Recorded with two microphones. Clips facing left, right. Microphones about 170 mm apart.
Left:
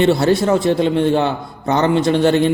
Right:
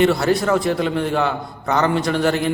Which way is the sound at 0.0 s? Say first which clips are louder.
Left 3 dB; 30° left (ahead or behind).